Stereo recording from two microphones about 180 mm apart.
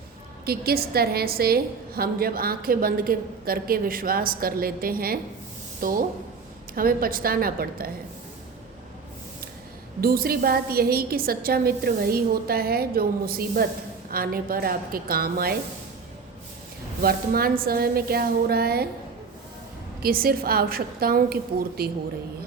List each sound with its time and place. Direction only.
0.4 s a woman's voice: 60° right (ahead or behind)
10.0 s a woman's voice: 55° right (ahead or behind)
17.0 s a woman's voice: 55° right (ahead or behind)
20.0 s a woman's voice: 55° right (ahead or behind)